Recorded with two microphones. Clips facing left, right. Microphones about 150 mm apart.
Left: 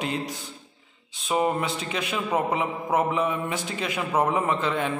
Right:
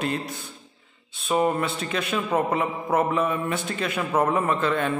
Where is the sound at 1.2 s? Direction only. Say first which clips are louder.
Right 2 dB; 15° left (ahead or behind).